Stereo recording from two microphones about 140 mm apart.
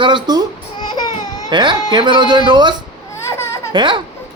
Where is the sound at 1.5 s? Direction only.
35° right (ahead or behind).